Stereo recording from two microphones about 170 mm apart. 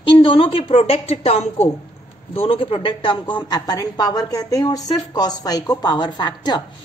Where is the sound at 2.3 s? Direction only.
35° left (ahead or behind).